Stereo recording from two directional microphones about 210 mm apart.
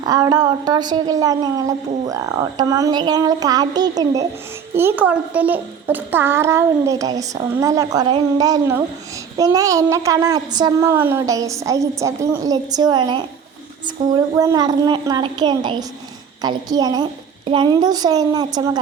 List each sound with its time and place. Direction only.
0.0 s a woman's voice: 20° right (ahead or behind)